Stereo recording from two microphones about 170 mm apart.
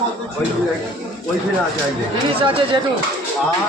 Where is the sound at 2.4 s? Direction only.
30° right (ahead or behind).